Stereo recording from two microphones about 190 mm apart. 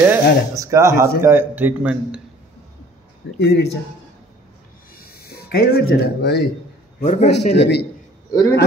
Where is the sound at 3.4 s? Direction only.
65° left (ahead or behind).